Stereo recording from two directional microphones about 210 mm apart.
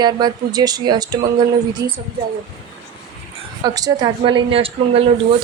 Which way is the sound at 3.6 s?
20° right (ahead or behind).